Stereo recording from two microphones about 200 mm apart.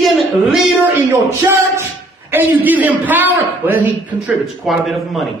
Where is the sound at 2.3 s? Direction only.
10° right (ahead or behind).